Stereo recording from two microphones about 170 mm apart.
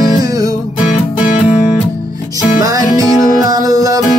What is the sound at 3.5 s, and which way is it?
Music, 20° right (ahead or behind).